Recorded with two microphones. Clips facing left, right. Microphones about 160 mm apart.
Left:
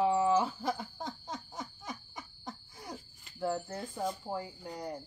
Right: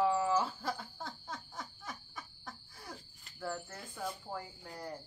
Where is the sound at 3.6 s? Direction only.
35° left (ahead or behind).